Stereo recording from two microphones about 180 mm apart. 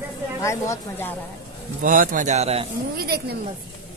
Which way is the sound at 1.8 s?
45° right (ahead or behind).